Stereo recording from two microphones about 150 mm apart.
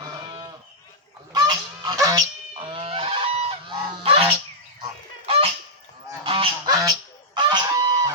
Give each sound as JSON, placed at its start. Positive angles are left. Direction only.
{"t": 1.3, "sound": "goose", "side_deg": -25}
{"t": 2.6, "sound": "goose", "side_deg": -35}
{"t": 5.2, "sound": "fowl", "side_deg": -40}
{"t": 6.2, "sound": "goose", "side_deg": -35}